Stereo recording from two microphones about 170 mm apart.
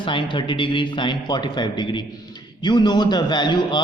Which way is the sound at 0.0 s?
30° left (ahead or behind).